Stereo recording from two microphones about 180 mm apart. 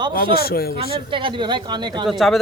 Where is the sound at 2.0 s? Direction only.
Centre (ahead or behind).